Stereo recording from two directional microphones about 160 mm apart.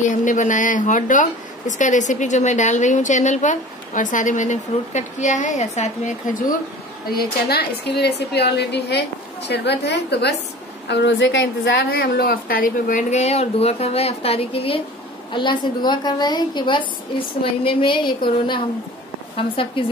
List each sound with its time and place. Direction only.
0.0 s a woman's voice: 50° left (ahead or behind)
7.1 s a woman's voice: 80° left; by 18.1 s 30° left (ahead or behind)
19.3 s a woman's voice: 35° left (ahead or behind)